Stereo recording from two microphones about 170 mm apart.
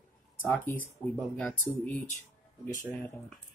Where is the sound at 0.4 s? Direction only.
10° left (ahead or behind).